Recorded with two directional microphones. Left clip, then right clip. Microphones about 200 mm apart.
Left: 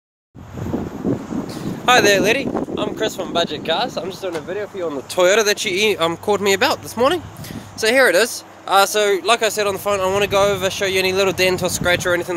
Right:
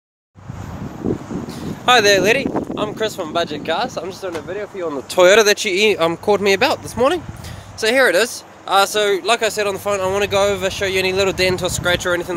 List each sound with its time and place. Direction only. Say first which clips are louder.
1.9 s speech: right 1 dB; 15° right (ahead or behind)
2.2 s speech: right 2 dB; 40° right (ahead or behind)
3.0 s speech: even; 25° right (ahead or behind)
3.3 s speech: left 1 dB; 10° right (ahead or behind)
5.1 s speech: right 4 dB; 45° right (ahead or behind)
5.5 s speech: right 2 dB; 25° right (ahead or behind); by 12.4 s centre (ahead or behind)